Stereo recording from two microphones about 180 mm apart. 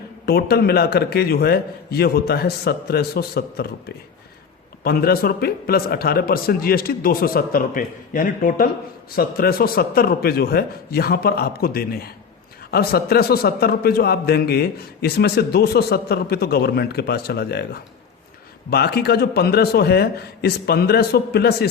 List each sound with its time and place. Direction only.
0.3 s a man's voice: 60° left (ahead or behind)
18.7 s a man's voice: 65° left (ahead or behind)